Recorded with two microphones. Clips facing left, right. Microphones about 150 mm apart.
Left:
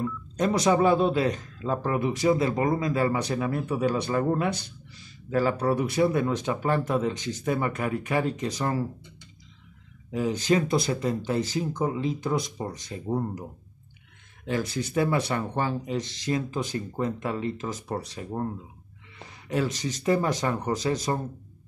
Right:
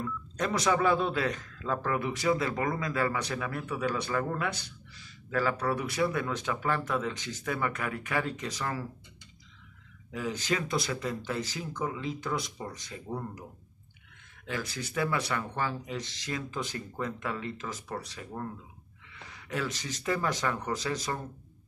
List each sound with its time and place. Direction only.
0.0 s speech: 25° left (ahead or behind)
10.1 s speech: 25° left (ahead or behind)
19.1 s a sound: 30° left (ahead or behind)
19.7 s speech: 20° left (ahead or behind)